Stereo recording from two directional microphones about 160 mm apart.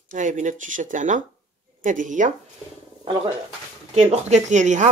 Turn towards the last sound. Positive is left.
turn(degrees=-50)  # may be behind; listen again after turning